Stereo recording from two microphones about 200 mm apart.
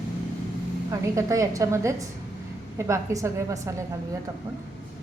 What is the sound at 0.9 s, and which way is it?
A woman's voice, 15° right (ahead or behind).